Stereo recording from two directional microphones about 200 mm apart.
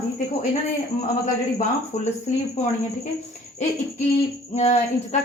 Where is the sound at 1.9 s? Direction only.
35° left (ahead or behind).